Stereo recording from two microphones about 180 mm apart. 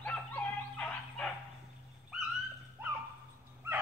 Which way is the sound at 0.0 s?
5° left (ahead or behind).